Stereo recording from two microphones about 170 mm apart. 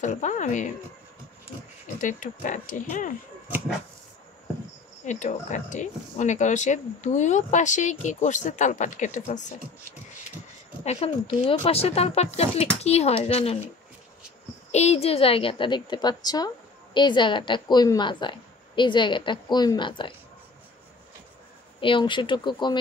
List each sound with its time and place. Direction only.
0.0 s speech: 45° left (ahead or behind)
2.0 s speech: 50° left (ahead or behind)
5.0 s speech: 45° left (ahead or behind)
10.8 s speech: 35° left (ahead or behind)
14.7 s a woman's voice: 40° left (ahead or behind)
21.7 s a woman's voice: 30° left (ahead or behind)